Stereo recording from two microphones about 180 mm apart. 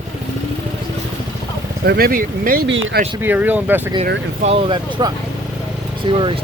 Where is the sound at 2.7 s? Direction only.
85° right.